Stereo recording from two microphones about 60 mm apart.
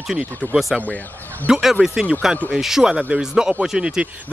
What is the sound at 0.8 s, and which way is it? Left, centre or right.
Speech, left.